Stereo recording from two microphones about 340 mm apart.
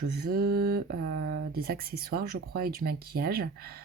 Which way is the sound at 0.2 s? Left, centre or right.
Right.